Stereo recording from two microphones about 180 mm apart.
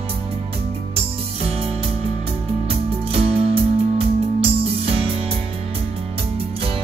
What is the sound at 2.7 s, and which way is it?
Music, 30° right (ahead or behind).